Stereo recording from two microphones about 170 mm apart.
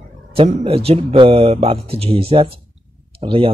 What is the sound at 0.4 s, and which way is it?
Speech, 35° right (ahead or behind).